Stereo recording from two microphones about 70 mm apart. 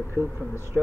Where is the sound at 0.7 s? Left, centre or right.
Centre.